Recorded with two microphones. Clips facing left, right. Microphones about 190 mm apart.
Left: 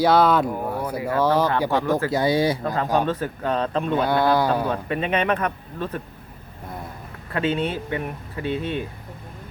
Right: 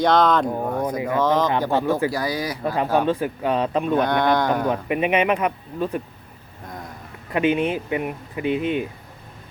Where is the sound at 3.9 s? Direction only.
5° left (ahead or behind).